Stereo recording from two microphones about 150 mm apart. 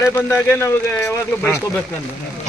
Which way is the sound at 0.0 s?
20° left (ahead or behind).